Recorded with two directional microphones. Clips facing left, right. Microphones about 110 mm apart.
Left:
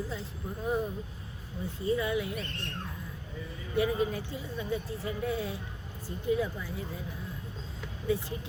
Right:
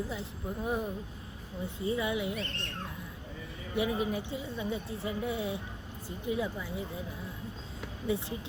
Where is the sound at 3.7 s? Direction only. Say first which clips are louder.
Left 2 dB; 20° right (ahead or behind).